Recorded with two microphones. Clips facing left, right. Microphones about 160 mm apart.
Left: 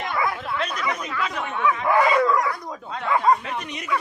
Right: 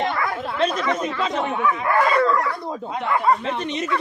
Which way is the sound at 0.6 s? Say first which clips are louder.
Right 9 dB; 25° right (ahead or behind).